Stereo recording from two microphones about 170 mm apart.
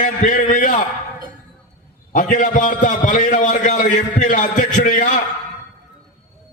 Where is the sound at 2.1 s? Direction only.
50° left (ahead or behind).